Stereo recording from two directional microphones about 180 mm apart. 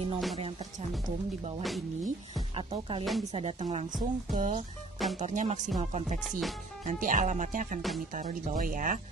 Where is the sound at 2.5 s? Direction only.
30° right (ahead or behind).